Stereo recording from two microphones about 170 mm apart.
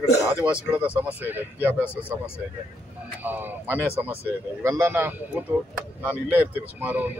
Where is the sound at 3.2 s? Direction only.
10° right (ahead or behind).